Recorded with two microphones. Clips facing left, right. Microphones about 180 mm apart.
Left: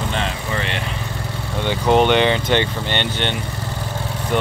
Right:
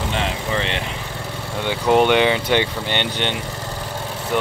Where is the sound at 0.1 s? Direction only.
20° right (ahead or behind).